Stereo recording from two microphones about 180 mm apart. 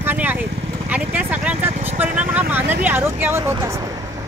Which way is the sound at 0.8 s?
10° right (ahead or behind).